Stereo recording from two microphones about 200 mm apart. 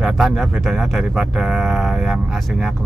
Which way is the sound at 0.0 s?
Centre (ahead or behind).